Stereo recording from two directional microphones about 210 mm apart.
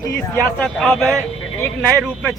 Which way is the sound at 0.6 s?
Centre (ahead or behind).